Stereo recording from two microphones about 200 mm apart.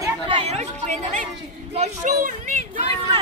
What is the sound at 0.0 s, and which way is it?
Chatter, 25° right (ahead or behind).